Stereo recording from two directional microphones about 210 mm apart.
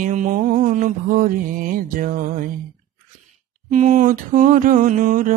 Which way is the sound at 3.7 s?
35° right (ahead or behind).